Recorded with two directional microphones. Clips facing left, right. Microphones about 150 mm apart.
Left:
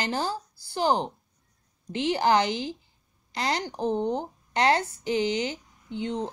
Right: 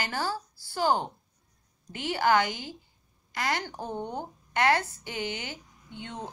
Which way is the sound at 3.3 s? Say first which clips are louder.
Left 2 dB; 20° left (ahead or behind).